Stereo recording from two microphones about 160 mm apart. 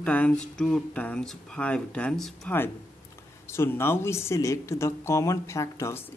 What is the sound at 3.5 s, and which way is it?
Speech, 15° left (ahead or behind).